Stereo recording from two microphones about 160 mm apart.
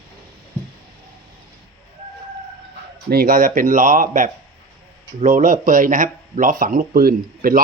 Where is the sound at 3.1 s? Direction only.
65° right (ahead or behind).